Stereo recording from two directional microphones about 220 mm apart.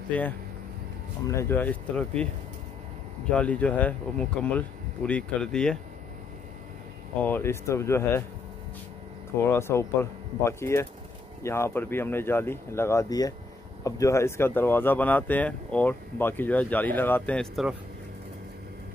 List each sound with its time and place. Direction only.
0.1 s speech: 5° left (ahead or behind)
1.3 s speech: 10° left (ahead or behind)
3.3 s speech: 5° left (ahead or behind)
7.2 s speech: 10° left (ahead or behind)
9.5 s speech: 10° left (ahead or behind)